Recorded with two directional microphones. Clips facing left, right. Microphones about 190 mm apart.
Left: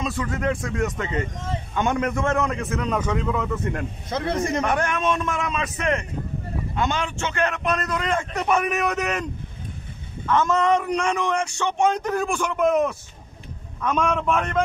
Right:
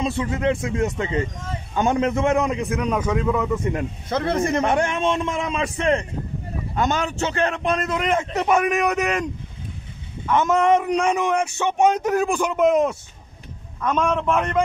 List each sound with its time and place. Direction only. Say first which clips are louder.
0.0 s a man's voice: right 3 dB; 25° right (ahead or behind); by 3.8 s 5° right (ahead or behind)
4.1 s a man's voice: right 3 dB; 55° right (ahead or behind)
4.6 s a man's voice: right 3 dB; 25° right (ahead or behind)
6.7 s a man's voice: right 3 dB; 45° right (ahead or behind); by 9.2 s 10° right (ahead or behind)
10.2 s a man's voice: right 2 dB; 15° right (ahead or behind)
13.8 s a man's voice: right 1 dB; 5° left (ahead or behind)